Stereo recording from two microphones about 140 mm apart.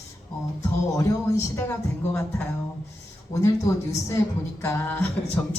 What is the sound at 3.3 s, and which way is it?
A woman's voice, 20° left (ahead or behind).